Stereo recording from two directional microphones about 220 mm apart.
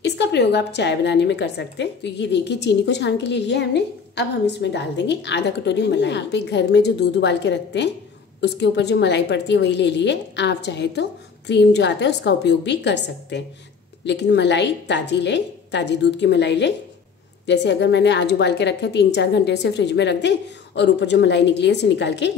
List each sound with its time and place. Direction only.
0.0 s a woman's voice: 50° left (ahead or behind)